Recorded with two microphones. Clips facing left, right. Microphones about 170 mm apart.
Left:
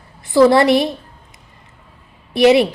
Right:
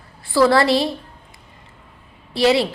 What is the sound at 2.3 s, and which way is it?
Speech, 20° left (ahead or behind).